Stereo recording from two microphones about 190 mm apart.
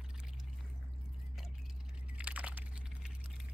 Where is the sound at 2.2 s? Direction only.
5° right (ahead or behind).